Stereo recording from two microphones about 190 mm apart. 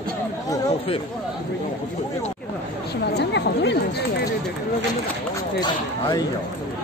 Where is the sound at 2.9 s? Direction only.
60° left (ahead or behind).